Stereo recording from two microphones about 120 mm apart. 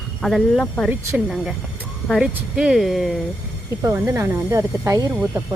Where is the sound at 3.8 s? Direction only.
25° right (ahead or behind).